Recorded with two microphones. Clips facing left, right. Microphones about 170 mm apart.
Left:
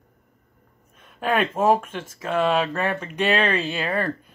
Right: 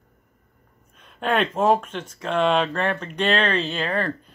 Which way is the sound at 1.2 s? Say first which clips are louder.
Even; 10° left (ahead or behind).